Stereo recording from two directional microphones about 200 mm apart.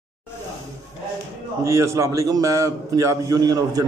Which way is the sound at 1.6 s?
15° right (ahead or behind).